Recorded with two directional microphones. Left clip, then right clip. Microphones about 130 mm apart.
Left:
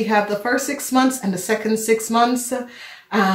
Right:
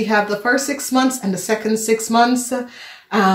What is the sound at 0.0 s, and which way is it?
Speech, 30° right (ahead or behind).